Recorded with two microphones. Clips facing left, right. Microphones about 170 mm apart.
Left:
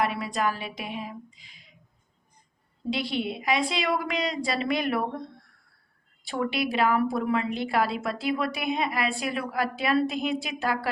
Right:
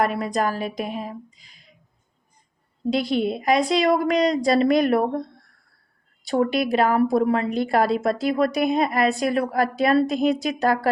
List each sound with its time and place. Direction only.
0.0 s a woman's voice: 45° right (ahead or behind)
2.9 s a woman's voice: 45° right (ahead or behind)
6.2 s a woman's voice: 40° right (ahead or behind)